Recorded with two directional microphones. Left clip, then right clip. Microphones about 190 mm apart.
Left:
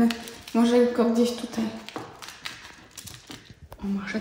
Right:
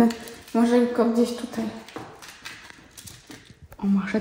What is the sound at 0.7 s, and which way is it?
Speech, centre (ahead or behind).